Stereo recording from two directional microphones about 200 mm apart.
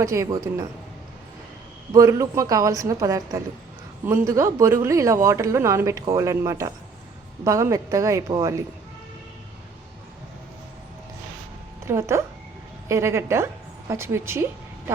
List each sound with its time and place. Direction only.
0.0 s a woman's voice: 15° right (ahead or behind)
1.9 s a woman's voice: 15° right (ahead or behind)
11.9 s a woman's voice: 15° right (ahead or behind)